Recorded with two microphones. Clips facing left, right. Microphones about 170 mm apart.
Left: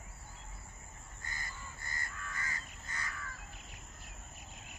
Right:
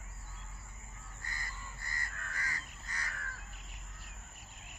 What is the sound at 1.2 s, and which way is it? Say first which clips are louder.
Crow: even; 20° left (ahead or behind).